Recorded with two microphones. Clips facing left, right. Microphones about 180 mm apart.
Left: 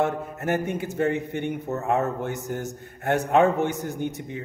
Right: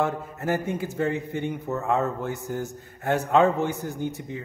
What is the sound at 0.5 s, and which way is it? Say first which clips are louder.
A man's voice: left 1 dB; 20° left (ahead or behind).